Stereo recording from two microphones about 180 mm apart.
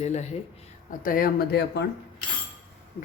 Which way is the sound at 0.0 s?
40° left (ahead or behind).